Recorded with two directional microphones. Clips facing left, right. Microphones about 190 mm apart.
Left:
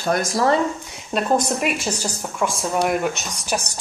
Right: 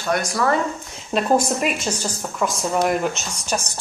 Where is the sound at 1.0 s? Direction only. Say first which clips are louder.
Right 1 dB; 5° right (ahead or behind).